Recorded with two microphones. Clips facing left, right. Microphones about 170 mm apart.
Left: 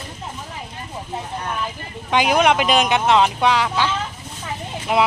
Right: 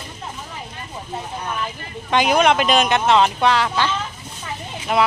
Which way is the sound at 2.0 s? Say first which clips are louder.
Even; 10° left (ahead or behind).